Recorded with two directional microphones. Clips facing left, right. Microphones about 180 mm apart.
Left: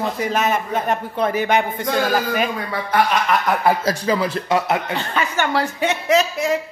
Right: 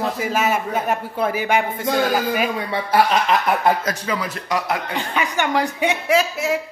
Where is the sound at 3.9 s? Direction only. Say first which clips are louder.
Left 5 dB; 30° left (ahead or behind).